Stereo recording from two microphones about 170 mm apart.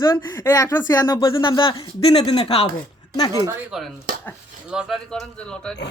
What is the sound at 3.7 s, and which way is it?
Speech, centre (ahead or behind).